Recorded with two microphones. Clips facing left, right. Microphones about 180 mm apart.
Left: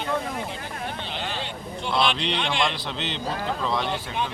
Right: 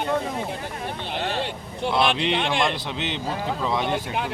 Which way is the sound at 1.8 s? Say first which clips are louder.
Right 3 dB; 55° right (ahead or behind).